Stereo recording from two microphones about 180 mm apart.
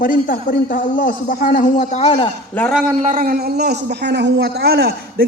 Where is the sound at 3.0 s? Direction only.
50° right (ahead or behind).